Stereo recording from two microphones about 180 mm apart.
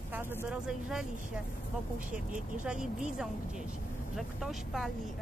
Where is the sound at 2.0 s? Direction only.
45° right (ahead or behind).